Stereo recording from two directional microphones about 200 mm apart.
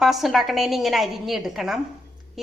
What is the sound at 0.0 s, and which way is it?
A woman's voice, centre (ahead or behind).